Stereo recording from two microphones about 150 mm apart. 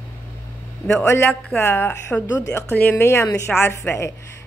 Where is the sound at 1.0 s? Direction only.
15° left (ahead or behind).